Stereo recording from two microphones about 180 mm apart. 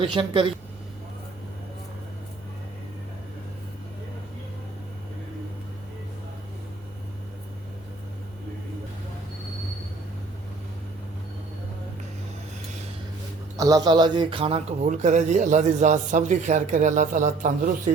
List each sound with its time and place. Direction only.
0.0 s speech: 30° right (ahead or behind)
13.6 s a man's voice: 20° right (ahead or behind); by 17.9 s 45° right (ahead or behind)